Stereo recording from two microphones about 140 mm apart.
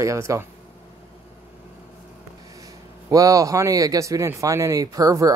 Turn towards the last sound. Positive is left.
turn(degrees=-25)  # may be behind; listen again after turning